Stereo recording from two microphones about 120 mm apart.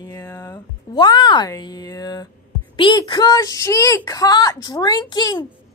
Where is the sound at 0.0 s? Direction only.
25° left (ahead or behind).